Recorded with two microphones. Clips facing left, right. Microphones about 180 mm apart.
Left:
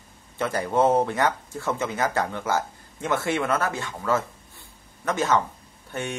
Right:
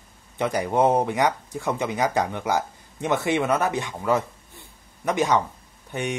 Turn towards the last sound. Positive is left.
turn(degrees=-15)  # may be behind; listen again after turning